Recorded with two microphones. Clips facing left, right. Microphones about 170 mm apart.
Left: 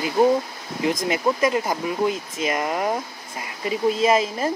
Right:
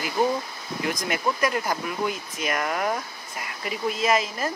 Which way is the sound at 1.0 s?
25° left (ahead or behind).